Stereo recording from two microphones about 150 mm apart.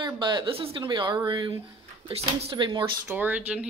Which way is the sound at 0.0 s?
30° right (ahead or behind).